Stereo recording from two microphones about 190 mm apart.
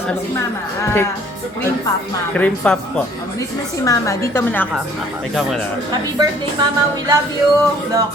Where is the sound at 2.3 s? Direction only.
5° left (ahead or behind).